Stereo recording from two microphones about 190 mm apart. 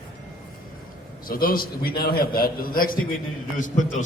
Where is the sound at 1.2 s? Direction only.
50° left (ahead or behind).